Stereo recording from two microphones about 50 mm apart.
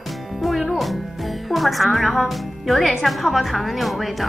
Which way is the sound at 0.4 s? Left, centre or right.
Centre.